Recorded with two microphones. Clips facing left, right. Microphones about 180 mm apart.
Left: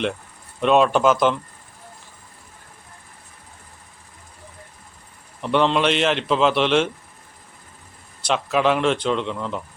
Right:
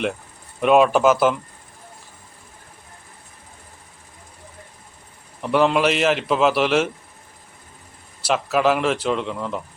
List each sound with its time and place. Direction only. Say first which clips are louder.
0.6 s speech: right 1 dB; 5° right (ahead or behind)
5.4 s a man's voice: right 1 dB; 5° right (ahead or behind)
8.2 s a man's voice: right 1 dB; 5° right (ahead or behind)